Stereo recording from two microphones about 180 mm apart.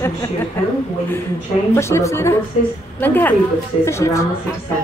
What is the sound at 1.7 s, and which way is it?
Speech, 15° left (ahead or behind).